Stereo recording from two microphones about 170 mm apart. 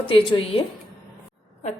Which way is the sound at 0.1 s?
30° left (ahead or behind).